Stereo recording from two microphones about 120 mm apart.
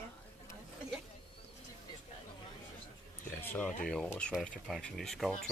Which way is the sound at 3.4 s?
10° left (ahead or behind).